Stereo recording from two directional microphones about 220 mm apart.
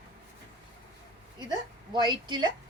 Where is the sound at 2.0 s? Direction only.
20° right (ahead or behind).